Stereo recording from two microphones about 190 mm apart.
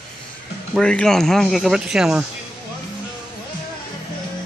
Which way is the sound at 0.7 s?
5° left (ahead or behind).